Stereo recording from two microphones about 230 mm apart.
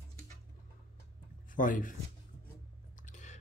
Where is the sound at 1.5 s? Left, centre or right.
Left.